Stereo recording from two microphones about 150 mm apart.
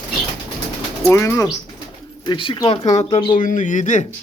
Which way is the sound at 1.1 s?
15° left (ahead or behind).